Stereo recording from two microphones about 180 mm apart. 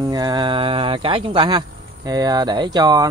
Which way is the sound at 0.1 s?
20° right (ahead or behind).